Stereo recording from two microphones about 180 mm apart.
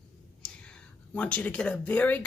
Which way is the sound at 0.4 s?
5° left (ahead or behind).